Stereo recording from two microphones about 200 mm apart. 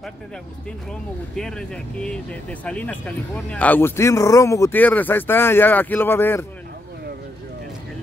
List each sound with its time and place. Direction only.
1.3 s a man's voice: 5° left (ahead or behind)